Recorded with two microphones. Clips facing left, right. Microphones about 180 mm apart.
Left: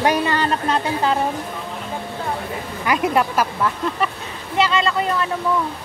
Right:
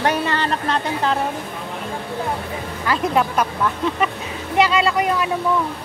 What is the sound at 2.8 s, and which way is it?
Speech, 15° left (ahead or behind).